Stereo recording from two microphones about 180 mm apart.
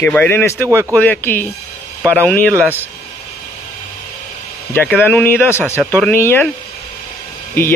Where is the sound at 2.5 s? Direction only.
10° right (ahead or behind).